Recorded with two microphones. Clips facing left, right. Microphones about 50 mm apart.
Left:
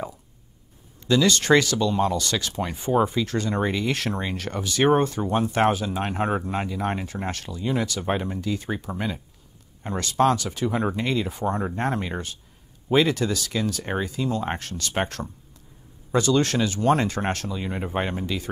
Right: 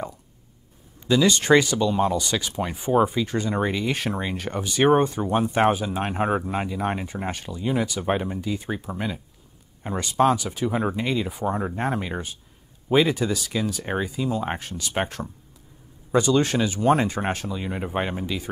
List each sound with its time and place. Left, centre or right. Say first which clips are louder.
1.0 s speech: right 1 dB; centre
5.3 s speech: right 1 dB; centre